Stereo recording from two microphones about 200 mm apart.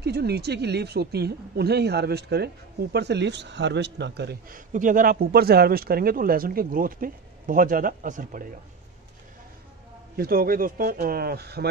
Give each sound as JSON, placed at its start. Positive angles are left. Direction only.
{"t": 0.0, "sound": "speech", "side_deg": -55}
{"t": 10.1, "sound": "speech", "side_deg": -50}